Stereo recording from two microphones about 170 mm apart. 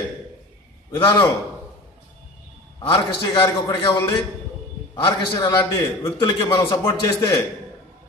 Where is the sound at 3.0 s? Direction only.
20° left (ahead or behind).